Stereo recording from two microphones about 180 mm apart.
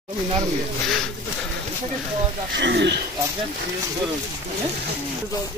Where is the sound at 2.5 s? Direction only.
75° right (ahead or behind).